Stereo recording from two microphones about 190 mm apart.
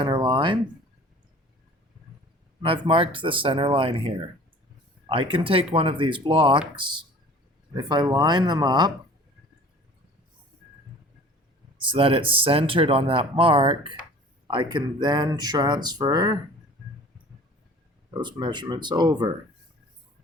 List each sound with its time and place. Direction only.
0.0 s a sound: 25° right (ahead or behind)
2.6 s speech: 25° right (ahead or behind)
7.8 s speech: 20° right (ahead or behind)
11.9 s speech: 30° right (ahead or behind)
18.1 s speech: 25° right (ahead or behind)